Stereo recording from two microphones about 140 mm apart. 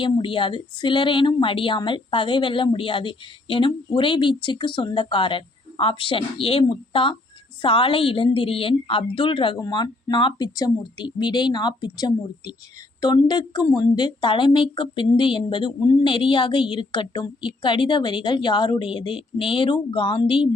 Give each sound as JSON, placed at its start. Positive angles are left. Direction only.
{"t": 0.0, "sound": "speech", "side_deg": 35}